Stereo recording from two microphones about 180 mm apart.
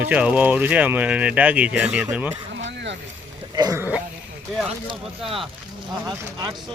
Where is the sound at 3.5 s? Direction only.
20° right (ahead or behind).